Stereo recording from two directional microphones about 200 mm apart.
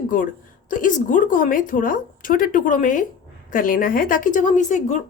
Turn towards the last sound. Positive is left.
turn(degrees=40)  # may be behind; listen again after turning